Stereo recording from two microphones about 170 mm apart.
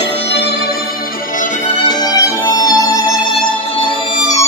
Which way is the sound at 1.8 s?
25° left (ahead or behind).